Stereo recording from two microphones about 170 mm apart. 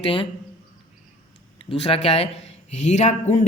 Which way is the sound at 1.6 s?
35° left (ahead or behind).